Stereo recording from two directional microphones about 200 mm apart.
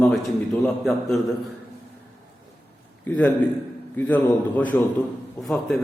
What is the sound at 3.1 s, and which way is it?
A man's voice, 10° left (ahead or behind).